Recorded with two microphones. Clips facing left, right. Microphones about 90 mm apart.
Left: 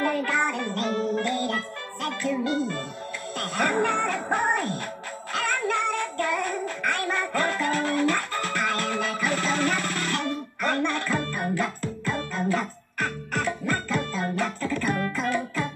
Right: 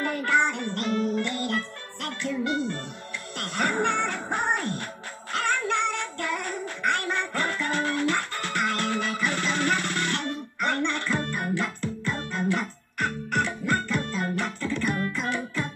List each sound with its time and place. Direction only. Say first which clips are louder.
0.0 s music: even; 40° left (ahead or behind)